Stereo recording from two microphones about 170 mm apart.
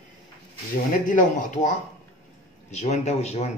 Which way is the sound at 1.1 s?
50° left (ahead or behind).